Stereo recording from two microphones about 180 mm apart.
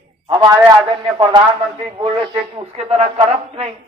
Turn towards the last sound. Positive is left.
turn(degrees=-35)  # may be behind; listen again after turning